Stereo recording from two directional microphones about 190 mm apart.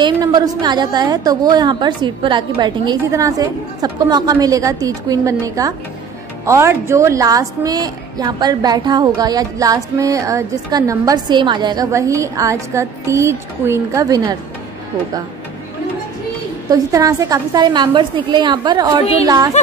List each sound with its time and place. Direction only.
0.0 s a woman's voice: 20° right (ahead or behind)
16.7 s a woman's voice: 15° right (ahead or behind)